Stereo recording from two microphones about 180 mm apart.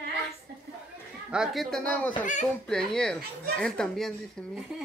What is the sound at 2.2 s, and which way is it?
Speech, 45° left (ahead or behind).